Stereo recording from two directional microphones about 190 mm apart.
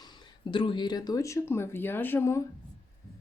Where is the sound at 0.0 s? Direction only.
25° left (ahead or behind).